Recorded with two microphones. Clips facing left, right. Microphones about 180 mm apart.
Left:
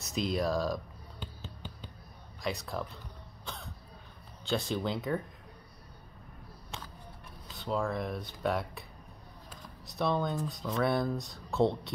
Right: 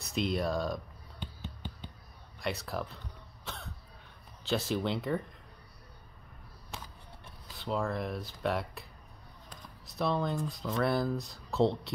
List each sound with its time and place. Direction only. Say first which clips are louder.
0.0 s speech: even; centre (ahead or behind)
1.2 s finger snapping: right 2 dB; 45° left (ahead or behind)
2.4 s speech: even; 5° right (ahead or behind)
3.4 s cough: even; centre (ahead or behind)
4.5 s speech: right 1 dB; 5° right (ahead or behind)
7.5 s speech: left 1 dB; centre (ahead or behind)